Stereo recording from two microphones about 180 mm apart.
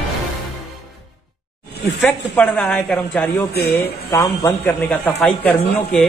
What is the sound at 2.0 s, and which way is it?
A man's voice, 5° left (ahead or behind).